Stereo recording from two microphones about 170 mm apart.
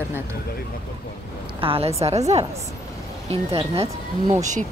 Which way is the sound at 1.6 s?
35° right (ahead or behind).